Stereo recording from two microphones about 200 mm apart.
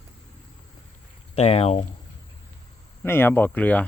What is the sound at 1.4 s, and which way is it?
Speech, 30° left (ahead or behind).